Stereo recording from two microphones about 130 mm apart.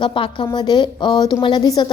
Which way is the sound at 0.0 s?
40° left (ahead or behind).